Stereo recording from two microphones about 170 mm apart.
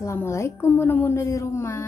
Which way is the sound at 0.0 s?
15° left (ahead or behind).